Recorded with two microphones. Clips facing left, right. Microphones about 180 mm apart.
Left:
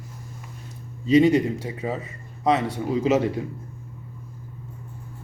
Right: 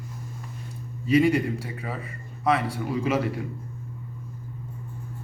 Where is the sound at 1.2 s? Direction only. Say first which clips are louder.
Left 4 dB; 25° left (ahead or behind).